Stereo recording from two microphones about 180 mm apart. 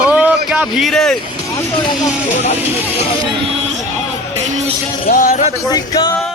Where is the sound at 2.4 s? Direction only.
35° left (ahead or behind).